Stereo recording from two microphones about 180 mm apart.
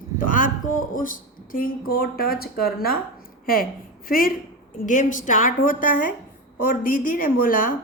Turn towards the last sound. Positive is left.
turn(degrees=50)  # may be behind; listen again after turning